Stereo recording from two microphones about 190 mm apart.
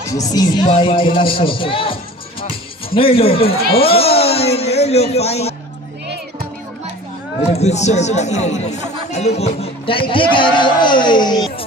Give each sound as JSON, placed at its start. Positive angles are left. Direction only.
{"t": 0.0, "sound": "speech", "side_deg": 20}
{"t": 7.5, "sound": "speech", "side_deg": 35}